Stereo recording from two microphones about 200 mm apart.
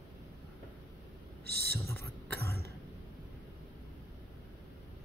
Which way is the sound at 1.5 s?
55° right (ahead or behind).